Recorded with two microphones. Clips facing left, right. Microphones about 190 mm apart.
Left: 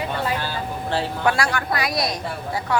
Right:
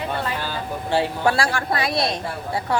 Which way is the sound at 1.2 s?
30° right (ahead or behind).